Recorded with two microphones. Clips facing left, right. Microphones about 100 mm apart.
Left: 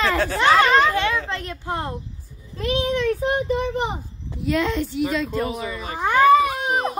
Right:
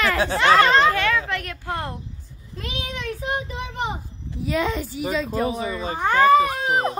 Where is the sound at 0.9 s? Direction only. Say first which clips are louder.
Right 1 dB; 20° left (ahead or behind).